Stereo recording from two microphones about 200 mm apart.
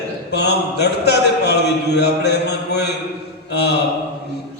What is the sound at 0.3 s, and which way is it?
Mantra, 55° left (ahead or behind).